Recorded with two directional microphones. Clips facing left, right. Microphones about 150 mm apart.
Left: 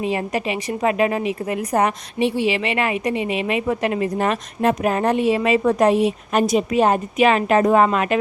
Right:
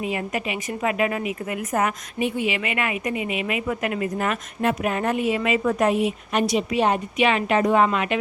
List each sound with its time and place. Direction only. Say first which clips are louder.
0.0 s a woman's voice: left 4 dB; 35° left (ahead or behind)
6.4 s a woman's voice: left 4 dB; 45° left (ahead or behind)